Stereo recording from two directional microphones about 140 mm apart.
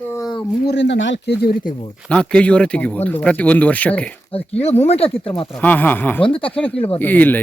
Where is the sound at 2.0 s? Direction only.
5° left (ahead or behind).